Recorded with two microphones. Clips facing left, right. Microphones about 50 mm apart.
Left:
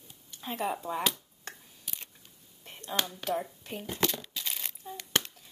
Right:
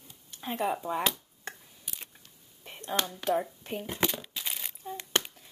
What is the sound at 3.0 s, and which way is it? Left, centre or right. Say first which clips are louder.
Speech: right 4 dB; centre.